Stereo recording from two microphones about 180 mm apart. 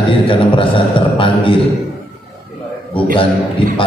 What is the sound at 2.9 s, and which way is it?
Speech, 30° left (ahead or behind).